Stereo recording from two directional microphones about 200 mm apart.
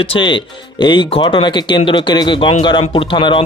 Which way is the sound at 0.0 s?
25° left (ahead or behind).